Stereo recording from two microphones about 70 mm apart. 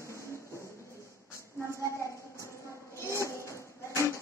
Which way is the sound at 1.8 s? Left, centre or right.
Left.